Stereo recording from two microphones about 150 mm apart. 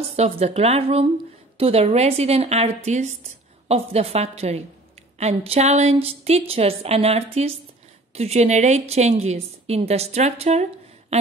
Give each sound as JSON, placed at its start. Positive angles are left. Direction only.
{"t": 0.1, "sound": "a woman's voice", "side_deg": -45}